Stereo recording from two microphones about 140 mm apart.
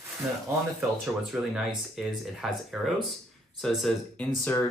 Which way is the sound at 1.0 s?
Centre (ahead or behind).